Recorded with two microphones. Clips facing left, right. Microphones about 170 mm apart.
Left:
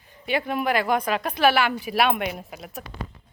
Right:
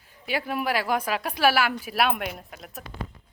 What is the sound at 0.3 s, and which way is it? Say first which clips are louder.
Speech: left 3 dB; 5° right (ahead or behind).